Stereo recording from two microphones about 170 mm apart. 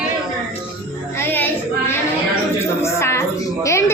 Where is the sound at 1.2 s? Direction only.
10° left (ahead or behind).